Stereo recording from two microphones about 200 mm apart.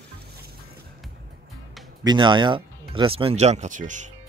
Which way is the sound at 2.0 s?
25° right (ahead or behind).